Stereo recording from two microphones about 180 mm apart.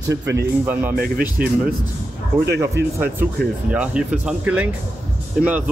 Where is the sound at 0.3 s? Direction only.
15° right (ahead or behind).